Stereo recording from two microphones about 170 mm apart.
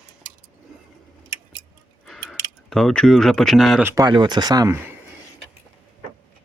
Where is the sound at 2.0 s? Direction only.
Centre (ahead or behind).